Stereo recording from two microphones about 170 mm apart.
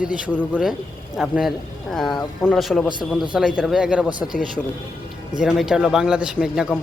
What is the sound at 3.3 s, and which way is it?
Speech, 5° right (ahead or behind).